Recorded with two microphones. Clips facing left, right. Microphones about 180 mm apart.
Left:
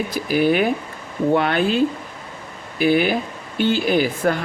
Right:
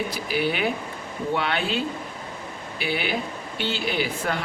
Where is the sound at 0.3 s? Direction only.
45° left (ahead or behind).